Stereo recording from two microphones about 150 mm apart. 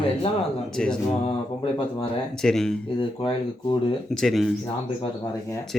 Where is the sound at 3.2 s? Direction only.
35° left (ahead or behind).